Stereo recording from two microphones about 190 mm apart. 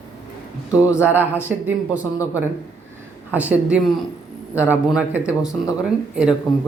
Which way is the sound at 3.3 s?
5° right (ahead or behind).